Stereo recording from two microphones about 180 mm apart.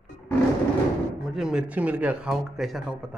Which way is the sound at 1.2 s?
5° right (ahead or behind).